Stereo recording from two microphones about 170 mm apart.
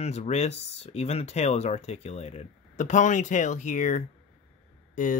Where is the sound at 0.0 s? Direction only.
40° left (ahead or behind).